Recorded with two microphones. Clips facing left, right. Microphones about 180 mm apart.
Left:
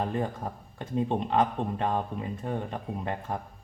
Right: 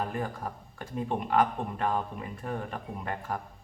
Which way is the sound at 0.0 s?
25° left (ahead or behind).